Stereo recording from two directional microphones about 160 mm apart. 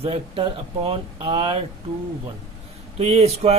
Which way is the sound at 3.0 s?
40° right (ahead or behind).